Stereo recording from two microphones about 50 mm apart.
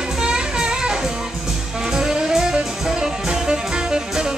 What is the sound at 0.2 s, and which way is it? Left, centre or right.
Music, centre.